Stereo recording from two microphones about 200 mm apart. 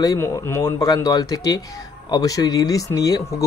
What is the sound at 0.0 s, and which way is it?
Speech, 15° left (ahead or behind).